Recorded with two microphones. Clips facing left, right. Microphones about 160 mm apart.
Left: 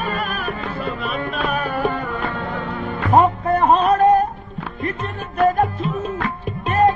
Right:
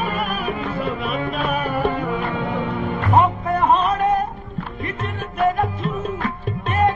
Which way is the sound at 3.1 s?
35° left (ahead or behind).